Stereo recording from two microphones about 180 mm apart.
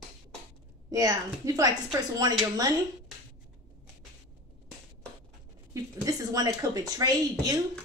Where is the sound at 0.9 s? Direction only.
20° right (ahead or behind).